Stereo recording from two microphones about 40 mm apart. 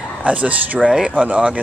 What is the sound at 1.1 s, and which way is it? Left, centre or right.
Speech, right.